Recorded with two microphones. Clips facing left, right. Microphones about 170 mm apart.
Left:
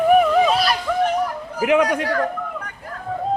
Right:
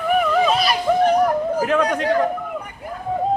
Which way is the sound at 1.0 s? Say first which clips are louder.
Right 6 dB; 45° right (ahead or behind).